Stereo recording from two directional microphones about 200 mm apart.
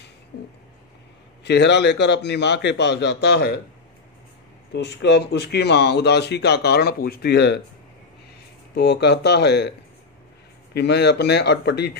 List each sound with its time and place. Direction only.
1.4 s speech: 60° left (ahead or behind)
4.7 s speech: 60° left (ahead or behind)
8.7 s speech: 55° left (ahead or behind)